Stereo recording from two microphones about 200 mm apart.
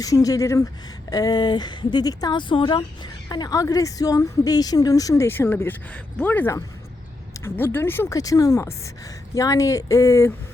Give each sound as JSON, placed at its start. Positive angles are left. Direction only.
{"t": 0.0, "sound": "a woman's voice", "side_deg": 15}